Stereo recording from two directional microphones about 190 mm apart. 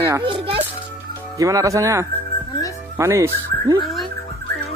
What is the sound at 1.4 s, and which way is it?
Speech, 15° right (ahead or behind).